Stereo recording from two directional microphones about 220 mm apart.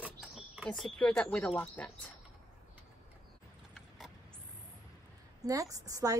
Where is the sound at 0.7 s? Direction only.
5° left (ahead or behind).